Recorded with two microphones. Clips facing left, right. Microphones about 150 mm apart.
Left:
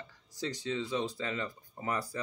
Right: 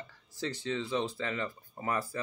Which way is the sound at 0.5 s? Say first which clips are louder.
Right 1 dB; 15° left (ahead or behind).